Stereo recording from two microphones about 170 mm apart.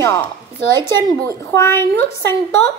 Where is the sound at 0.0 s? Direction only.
15° left (ahead or behind).